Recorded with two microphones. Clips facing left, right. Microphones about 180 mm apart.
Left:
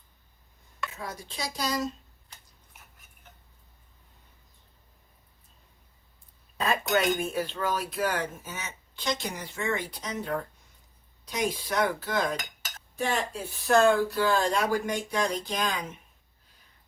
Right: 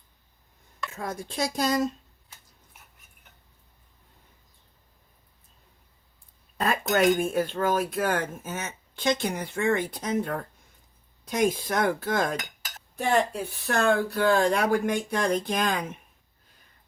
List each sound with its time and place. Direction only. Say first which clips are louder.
0.9 s speech: right 10 dB; 50° right (ahead or behind)
6.6 s speech: right 3 dB; 50° right (ahead or behind)
13.0 s speech: right 5 dB; 60° right (ahead or behind)